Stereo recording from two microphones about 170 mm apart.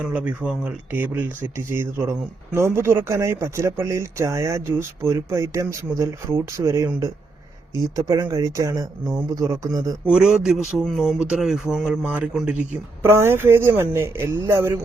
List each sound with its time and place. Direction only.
0.0 s speech: 10° right (ahead or behind)
10.1 s speech: 5° right (ahead or behind)